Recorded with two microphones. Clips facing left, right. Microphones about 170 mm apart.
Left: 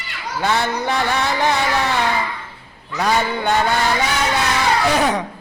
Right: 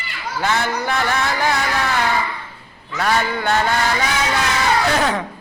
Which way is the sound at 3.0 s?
15° left (ahead or behind).